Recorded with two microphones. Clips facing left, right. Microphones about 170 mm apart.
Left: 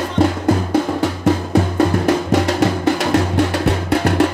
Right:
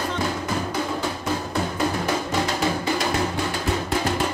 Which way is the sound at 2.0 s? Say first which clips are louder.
Left 8 dB; 70° left (ahead or behind).